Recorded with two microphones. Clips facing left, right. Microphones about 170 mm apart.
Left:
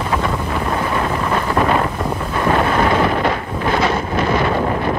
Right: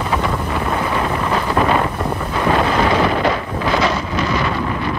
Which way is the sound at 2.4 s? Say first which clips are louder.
Even; 15° right (ahead or behind).